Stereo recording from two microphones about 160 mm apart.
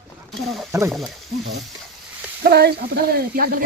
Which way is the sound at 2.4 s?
85° right.